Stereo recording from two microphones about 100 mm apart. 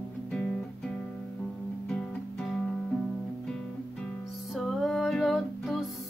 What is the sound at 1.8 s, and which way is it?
Music, 5° left (ahead or behind).